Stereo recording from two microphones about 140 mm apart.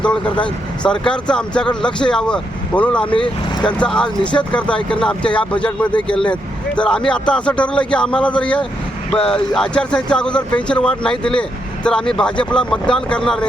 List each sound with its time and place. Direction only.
0.0 s speech: 5° left (ahead or behind)